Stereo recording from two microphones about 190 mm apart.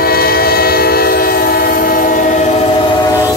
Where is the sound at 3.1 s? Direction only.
15° left (ahead or behind).